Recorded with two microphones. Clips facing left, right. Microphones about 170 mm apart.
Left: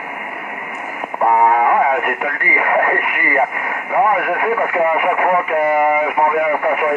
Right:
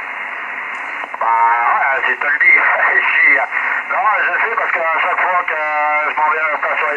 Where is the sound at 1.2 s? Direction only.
30° left (ahead or behind).